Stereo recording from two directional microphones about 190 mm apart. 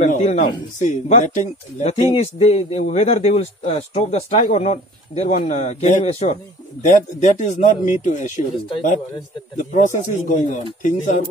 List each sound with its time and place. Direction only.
0.0 s speech: 40° left (ahead or behind)
9.6 s speech: 40° left (ahead or behind)